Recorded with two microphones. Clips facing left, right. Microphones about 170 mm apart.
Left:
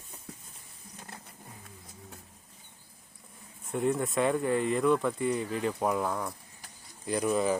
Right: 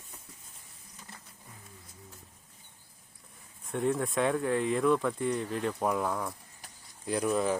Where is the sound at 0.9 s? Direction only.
65° left (ahead or behind).